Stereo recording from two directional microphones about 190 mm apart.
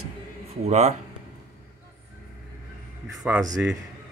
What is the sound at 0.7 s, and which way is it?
Speech, 35° right (ahead or behind).